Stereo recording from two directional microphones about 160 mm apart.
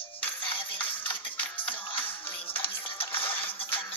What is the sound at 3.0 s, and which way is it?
Music, 35° left (ahead or behind).